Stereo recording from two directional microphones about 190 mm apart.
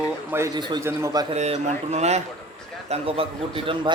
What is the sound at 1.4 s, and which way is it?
A man's voice, 35° right (ahead or behind).